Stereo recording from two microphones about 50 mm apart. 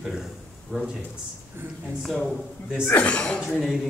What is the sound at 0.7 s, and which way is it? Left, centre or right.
Speech, right.